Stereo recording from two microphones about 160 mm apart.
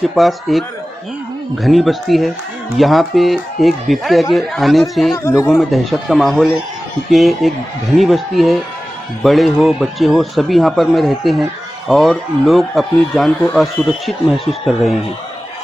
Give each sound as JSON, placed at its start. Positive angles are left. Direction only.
{"t": 0.0, "sound": "speech", "side_deg": 0}
{"t": 5.1, "sound": "speech", "side_deg": 15}
{"t": 5.5, "sound": "speech", "side_deg": 0}